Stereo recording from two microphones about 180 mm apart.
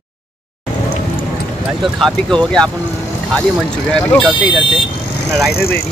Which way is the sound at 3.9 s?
5° left (ahead or behind).